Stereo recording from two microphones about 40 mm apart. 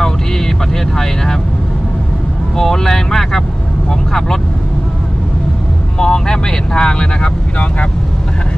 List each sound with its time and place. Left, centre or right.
0.9 s vehicle: centre
2.5 s vehicle: centre
5.9 s vehicle: centre